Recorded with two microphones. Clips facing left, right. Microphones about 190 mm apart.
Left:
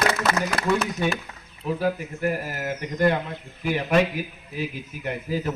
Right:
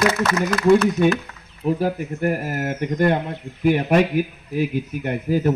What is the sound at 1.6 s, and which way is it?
Speech, 20° right (ahead or behind).